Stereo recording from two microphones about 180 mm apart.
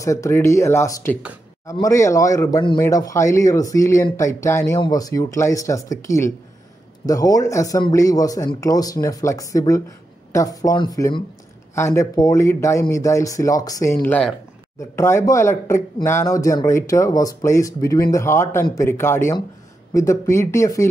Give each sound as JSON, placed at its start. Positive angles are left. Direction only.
{"t": 0.0, "sound": "speech", "side_deg": 15}
{"t": 14.0, "sound": "speech", "side_deg": 10}